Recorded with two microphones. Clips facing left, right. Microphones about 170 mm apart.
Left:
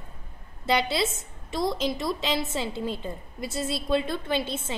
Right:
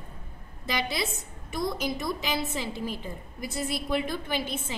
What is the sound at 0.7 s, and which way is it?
A woman's voice, 30° left (ahead or behind).